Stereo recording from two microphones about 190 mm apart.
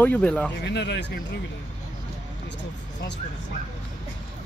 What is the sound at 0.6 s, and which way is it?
Speech, 65° left (ahead or behind).